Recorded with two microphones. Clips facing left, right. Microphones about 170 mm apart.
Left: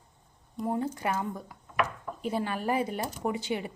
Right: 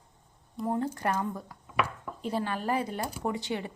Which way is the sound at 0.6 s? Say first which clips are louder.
Even; 10° left (ahead or behind).